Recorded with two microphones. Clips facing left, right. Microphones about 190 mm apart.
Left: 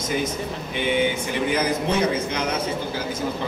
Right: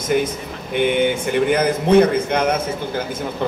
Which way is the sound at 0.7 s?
55° right (ahead or behind).